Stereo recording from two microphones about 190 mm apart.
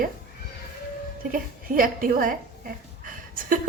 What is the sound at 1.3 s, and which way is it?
A woman's voice, 45° right (ahead or behind).